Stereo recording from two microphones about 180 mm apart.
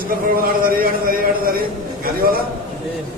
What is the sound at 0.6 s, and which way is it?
Speech, 55° right (ahead or behind).